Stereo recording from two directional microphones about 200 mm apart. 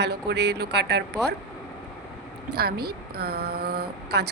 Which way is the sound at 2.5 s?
50° right (ahead or behind).